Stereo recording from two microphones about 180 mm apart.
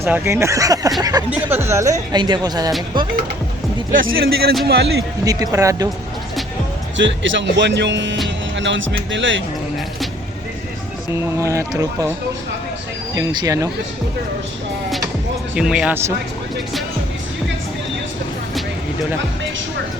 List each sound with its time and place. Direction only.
0.0 s speech: 15° right (ahead or behind)
4.0 s a man's voice: 75° right (ahead or behind)
5.2 s speech: 20° right (ahead or behind)
6.9 s speech: 90° right
11.3 s speech: 15° right (ahead or behind)
13.1 s speech: 20° right (ahead or behind)
15.5 s speech: 5° right (ahead or behind)